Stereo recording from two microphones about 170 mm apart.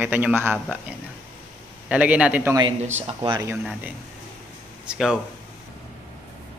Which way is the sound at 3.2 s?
25° right (ahead or behind).